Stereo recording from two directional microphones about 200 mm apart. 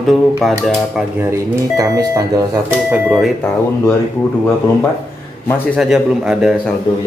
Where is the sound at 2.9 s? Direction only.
5° right (ahead or behind).